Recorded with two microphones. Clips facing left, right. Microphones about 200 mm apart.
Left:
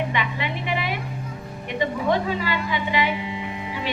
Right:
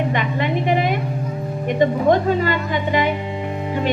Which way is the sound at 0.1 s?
45° right (ahead or behind).